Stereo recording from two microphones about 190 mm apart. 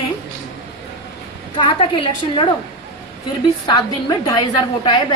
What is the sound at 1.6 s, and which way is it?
Speech, 25° left (ahead or behind).